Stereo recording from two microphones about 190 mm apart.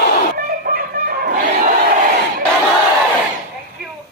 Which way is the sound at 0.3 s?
50° right (ahead or behind).